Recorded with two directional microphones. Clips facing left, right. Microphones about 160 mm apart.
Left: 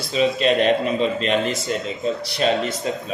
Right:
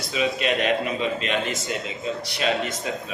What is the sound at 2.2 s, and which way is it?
Speech, 35° left (ahead or behind).